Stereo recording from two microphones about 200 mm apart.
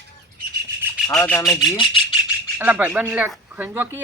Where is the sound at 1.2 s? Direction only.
15° left (ahead or behind).